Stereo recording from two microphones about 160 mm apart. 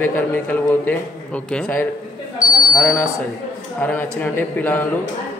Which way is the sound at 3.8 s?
10° left (ahead or behind).